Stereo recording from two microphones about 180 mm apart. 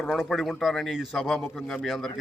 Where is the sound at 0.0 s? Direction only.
Centre (ahead or behind).